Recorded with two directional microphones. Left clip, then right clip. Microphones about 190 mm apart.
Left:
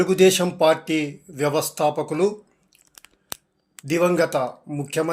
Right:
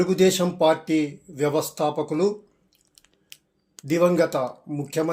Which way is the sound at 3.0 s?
35° left (ahead or behind).